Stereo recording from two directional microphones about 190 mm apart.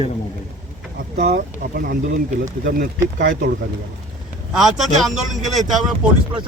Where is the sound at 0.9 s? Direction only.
50° right (ahead or behind).